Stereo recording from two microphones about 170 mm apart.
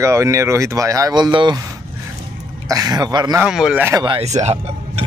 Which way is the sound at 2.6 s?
20° right (ahead or behind).